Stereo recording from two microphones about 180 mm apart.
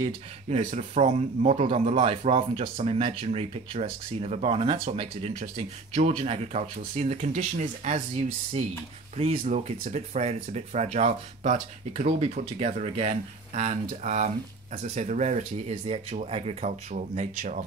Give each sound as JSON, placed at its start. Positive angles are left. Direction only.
{"t": 0.5, "sound": "speech", "side_deg": -40}
{"t": 9.1, "sound": "speech", "side_deg": -35}